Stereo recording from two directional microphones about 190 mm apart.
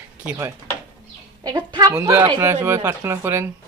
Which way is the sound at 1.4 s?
20° right (ahead or behind).